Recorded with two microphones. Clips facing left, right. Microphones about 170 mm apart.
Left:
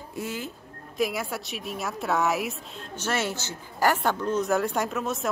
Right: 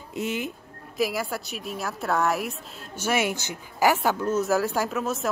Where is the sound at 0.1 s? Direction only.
20° right (ahead or behind).